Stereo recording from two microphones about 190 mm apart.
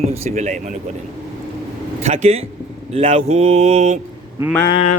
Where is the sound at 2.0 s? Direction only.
35° right (ahead or behind).